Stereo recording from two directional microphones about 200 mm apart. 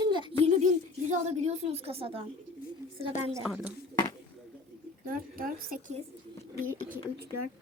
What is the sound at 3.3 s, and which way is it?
Speech, centre (ahead or behind).